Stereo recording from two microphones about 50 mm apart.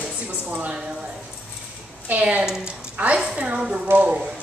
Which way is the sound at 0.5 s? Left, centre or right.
Right.